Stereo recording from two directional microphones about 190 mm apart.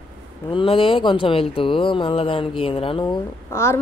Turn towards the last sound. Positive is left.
turn(degrees=15)  # may be behind; listen again after turning